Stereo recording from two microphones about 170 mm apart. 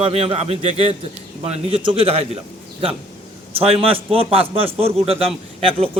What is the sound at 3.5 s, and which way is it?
Speech, 35° right (ahead or behind).